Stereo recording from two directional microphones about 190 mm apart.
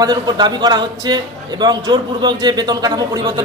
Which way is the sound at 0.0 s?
20° right (ahead or behind).